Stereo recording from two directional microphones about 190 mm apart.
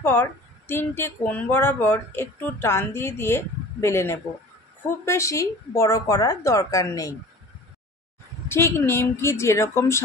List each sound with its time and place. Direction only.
0.0 s speech: 10° left (ahead or behind)
8.5 s speech: 10° left (ahead or behind)